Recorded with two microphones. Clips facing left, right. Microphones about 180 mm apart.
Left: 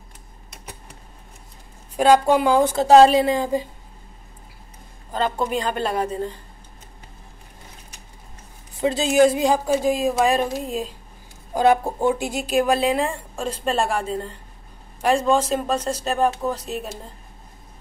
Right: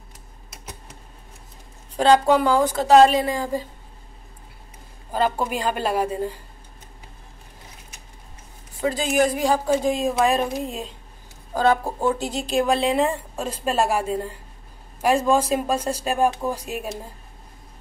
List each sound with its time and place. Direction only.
2.0 s a woman's voice: 10° left (ahead or behind)
5.1 s speech: 10° right (ahead or behind)
8.8 s a woman's voice: 25° left (ahead or behind)
9.7 s speech: 5° left (ahead or behind)
11.5 s speech: 15° left (ahead or behind); by 16.9 s 10° right (ahead or behind)